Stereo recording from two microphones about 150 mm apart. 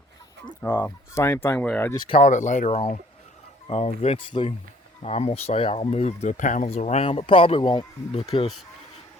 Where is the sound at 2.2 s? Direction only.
55° left (ahead or behind).